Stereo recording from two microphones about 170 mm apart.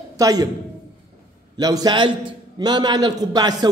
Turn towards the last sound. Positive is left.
turn(degrees=-25)  # may be behind; listen again after turning